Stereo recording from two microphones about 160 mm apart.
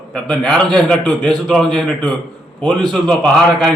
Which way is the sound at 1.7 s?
30° right (ahead or behind).